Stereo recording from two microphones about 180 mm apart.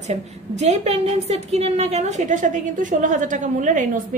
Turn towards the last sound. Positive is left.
turn(degrees=-45)  # may be behind; listen again after turning